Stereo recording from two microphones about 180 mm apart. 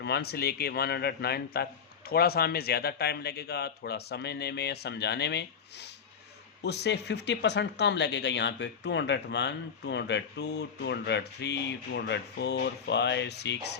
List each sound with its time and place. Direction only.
0.0 s speech: 65° left (ahead or behind)